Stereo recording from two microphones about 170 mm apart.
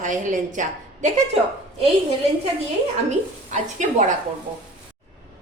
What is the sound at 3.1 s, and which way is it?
A woman's voice, 45° right (ahead or behind).